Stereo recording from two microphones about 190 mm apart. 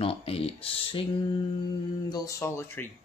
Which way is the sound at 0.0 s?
30° left (ahead or behind).